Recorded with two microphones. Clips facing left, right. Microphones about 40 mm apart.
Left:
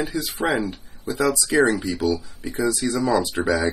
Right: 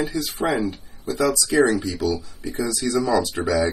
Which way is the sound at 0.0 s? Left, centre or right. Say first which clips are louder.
Right 1 dB; left.